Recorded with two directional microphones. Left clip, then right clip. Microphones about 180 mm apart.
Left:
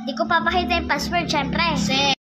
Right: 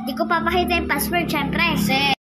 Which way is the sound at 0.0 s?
20° left (ahead or behind).